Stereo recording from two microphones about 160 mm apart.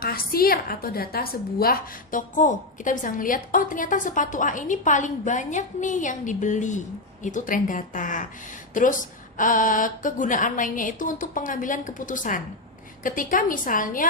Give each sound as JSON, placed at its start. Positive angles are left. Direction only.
{"t": 0.0, "sound": "a woman's voice", "side_deg": 70}